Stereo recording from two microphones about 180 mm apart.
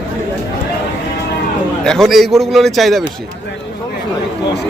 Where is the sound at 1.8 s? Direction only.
Centre (ahead or behind).